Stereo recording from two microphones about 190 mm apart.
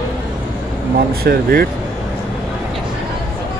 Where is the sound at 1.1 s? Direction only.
55° right (ahead or behind).